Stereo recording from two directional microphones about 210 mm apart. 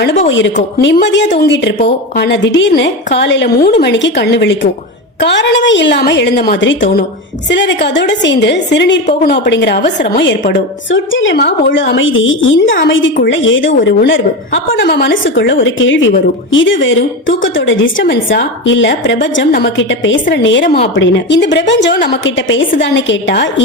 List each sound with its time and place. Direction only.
0.3 s a woman's voice: 60° left (ahead or behind)
22.2 s a woman's voice: 65° left (ahead or behind)